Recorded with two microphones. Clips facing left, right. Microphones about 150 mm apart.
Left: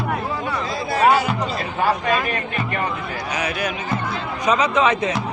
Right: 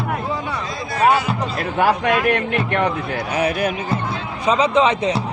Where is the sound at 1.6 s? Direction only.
70° right (ahead or behind).